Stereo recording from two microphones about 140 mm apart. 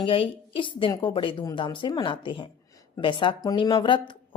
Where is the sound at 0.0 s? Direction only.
40° left (ahead or behind).